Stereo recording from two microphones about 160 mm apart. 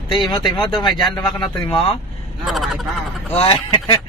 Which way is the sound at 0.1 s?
30° left (ahead or behind).